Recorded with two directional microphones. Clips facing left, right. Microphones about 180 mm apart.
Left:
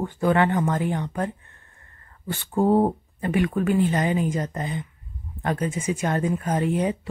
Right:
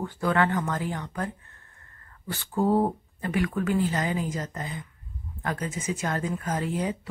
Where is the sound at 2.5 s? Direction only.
25° left (ahead or behind).